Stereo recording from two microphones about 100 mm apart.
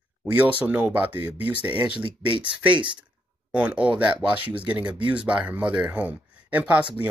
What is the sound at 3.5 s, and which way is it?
Speech, 10° right (ahead or behind).